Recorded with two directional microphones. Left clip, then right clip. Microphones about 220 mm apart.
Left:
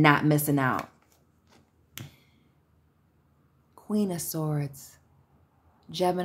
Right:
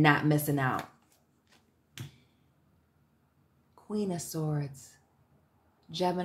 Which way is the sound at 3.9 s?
25° left (ahead or behind).